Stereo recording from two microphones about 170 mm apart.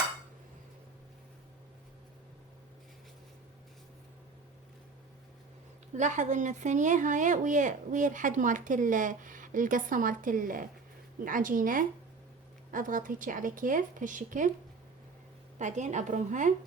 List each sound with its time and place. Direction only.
5.9 s speech: 45° right (ahead or behind)
15.5 s speech: 45° right (ahead or behind)